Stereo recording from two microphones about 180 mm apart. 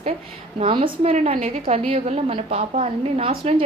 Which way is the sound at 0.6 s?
30° right (ahead or behind).